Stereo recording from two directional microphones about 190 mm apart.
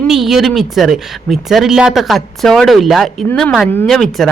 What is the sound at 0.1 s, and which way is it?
Speech, centre (ahead or behind).